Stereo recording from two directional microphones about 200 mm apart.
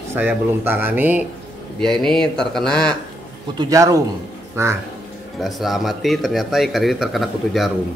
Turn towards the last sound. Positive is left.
turn(degrees=0)  # may be behind; listen again after turning